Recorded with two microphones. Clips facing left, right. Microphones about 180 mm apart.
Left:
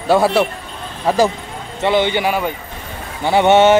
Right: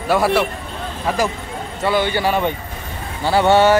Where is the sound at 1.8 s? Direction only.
20° left (ahead or behind).